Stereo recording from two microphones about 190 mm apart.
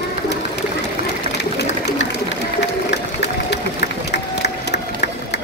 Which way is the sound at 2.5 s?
65° left (ahead or behind).